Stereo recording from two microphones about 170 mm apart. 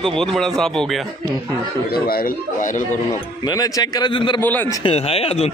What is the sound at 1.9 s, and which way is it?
Speech, 60° left (ahead or behind).